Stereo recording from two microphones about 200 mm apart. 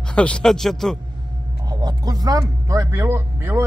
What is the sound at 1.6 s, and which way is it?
Speech, 20° right (ahead or behind).